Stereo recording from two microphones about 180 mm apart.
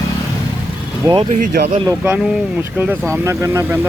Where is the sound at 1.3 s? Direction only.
55° right (ahead or behind).